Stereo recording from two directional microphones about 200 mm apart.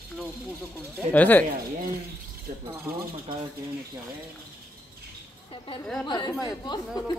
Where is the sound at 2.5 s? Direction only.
40° right (ahead or behind).